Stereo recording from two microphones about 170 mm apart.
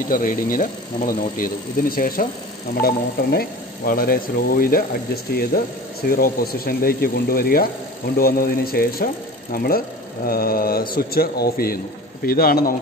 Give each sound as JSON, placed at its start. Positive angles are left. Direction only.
{"t": 0.1, "sound": "speech", "side_deg": 55}